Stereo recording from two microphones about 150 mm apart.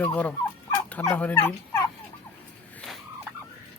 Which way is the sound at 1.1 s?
10° left (ahead or behind).